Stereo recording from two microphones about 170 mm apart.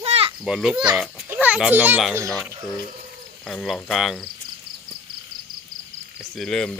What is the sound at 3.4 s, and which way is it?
Speech, centre (ahead or behind).